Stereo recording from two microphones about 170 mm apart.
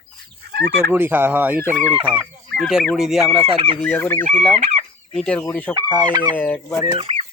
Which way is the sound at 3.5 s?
35° right (ahead or behind).